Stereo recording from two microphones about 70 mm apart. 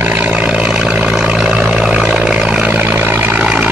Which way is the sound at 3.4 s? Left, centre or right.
Centre.